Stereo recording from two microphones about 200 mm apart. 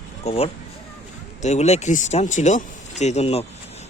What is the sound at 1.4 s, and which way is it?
Speech, 35° left (ahead or behind).